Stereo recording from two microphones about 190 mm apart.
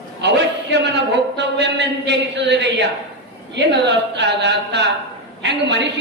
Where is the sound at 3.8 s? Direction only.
65° right (ahead or behind).